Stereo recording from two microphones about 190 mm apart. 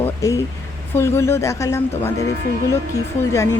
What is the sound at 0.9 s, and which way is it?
Speech, 15° left (ahead or behind).